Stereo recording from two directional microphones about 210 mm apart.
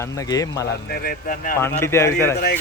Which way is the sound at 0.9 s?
45° left (ahead or behind).